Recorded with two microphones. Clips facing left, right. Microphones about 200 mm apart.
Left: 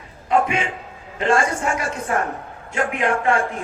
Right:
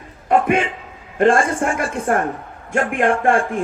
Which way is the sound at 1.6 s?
55° right (ahead or behind).